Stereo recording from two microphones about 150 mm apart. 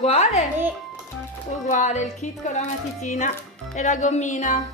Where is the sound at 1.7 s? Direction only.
55° left (ahead or behind).